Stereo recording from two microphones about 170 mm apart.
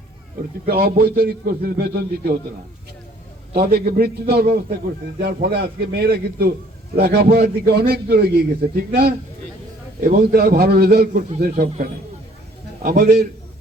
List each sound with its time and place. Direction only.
0.6 s a man's voice: 65° right (ahead or behind)
3.5 s a man's voice: 65° right (ahead or behind)
12.8 s a man's voice: 60° right (ahead or behind)